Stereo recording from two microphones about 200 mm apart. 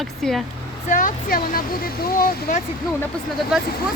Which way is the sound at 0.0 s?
Centre (ahead or behind).